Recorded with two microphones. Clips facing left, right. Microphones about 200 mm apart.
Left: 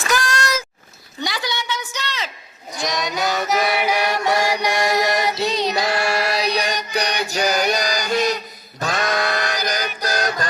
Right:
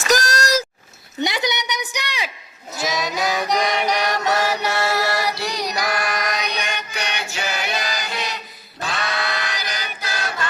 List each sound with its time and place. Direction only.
0.1 s vehicle: 40° right (ahead or behind)
1.2 s a sound: 20° right (ahead or behind)
2.7 s music: 5° right (ahead or behind); by 10.5 s 40° left (ahead or behind)